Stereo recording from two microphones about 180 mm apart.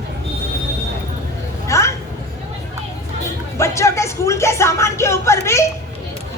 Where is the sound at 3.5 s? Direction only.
15° left (ahead or behind).